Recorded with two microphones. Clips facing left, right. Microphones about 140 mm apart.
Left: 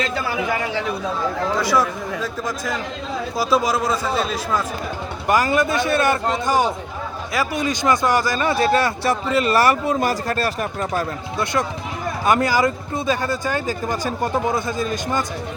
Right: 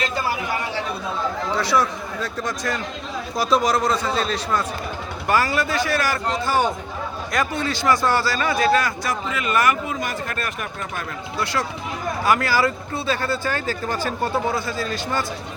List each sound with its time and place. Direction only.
1.8 s a man's voice: 5° left (ahead or behind); by 11.0 s 35° left (ahead or behind)
12.2 s speech: 20° left (ahead or behind)